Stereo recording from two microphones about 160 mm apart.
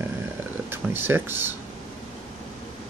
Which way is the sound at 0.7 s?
15° right (ahead or behind).